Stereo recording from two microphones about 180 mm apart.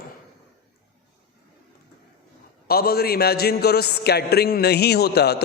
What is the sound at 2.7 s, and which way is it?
A man's voice, 60° left (ahead or behind).